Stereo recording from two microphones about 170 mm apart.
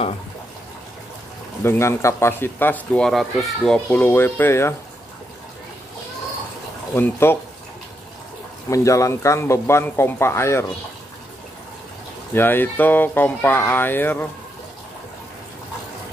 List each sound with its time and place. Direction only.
1.6 s speech: 15° left (ahead or behind)
6.9 s speech: 15° left (ahead or behind)
8.6 s speech: 20° left (ahead or behind)
12.4 s speech: 10° left (ahead or behind)